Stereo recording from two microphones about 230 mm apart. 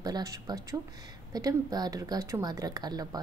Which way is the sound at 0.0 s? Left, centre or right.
Centre.